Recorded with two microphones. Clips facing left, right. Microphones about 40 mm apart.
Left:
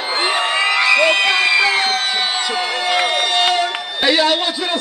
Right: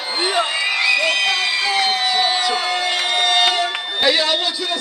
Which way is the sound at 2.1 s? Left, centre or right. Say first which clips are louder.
Right 1 dB; centre.